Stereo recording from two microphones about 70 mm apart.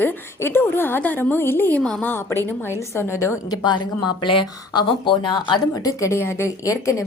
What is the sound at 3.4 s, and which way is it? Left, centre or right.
Speech, left.